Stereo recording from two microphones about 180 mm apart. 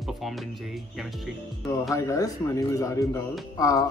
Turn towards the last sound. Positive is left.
turn(degrees=20)  # may be behind; listen again after turning